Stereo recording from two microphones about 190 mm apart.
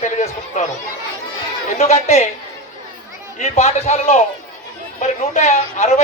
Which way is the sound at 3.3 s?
35° left (ahead or behind).